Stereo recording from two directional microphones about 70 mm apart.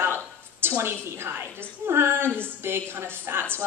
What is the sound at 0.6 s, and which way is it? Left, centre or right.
A woman's voice, right.